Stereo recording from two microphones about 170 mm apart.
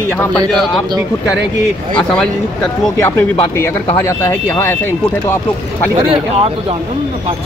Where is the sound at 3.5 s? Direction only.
15° left (ahead or behind).